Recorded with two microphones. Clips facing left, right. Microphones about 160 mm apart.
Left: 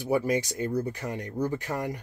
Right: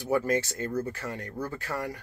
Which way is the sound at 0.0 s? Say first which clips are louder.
Left 1 dB; 15° left (ahead or behind).